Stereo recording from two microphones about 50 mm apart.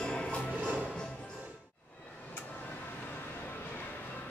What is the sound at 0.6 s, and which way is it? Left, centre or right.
Music, right.